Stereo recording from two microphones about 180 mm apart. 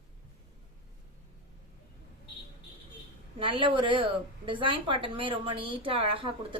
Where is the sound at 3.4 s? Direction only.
30° right (ahead or behind).